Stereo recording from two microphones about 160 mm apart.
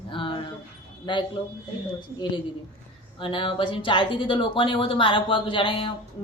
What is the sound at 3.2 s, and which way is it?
Speech, 30° left (ahead or behind).